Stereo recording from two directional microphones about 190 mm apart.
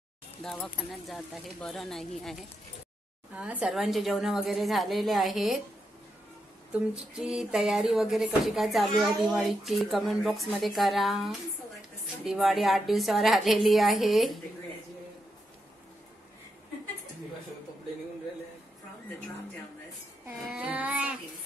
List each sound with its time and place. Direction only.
0.4 s speech: centre (ahead or behind)
3.3 s speech: 5° right (ahead or behind)
7.2 s speech: centre (ahead or behind)
20.5 s child singing: 5° right (ahead or behind)